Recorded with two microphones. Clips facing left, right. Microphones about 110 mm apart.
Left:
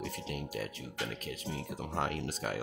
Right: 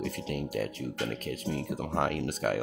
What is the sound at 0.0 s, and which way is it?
Music, 50° right (ahead or behind).